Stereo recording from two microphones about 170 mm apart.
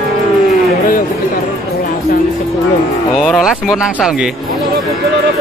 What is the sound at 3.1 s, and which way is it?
Speech, centre (ahead or behind).